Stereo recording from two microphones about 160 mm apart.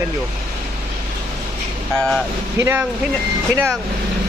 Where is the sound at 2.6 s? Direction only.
15° right (ahead or behind).